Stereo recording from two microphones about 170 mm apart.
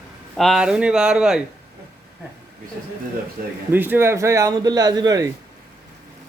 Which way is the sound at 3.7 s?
10° right (ahead or behind).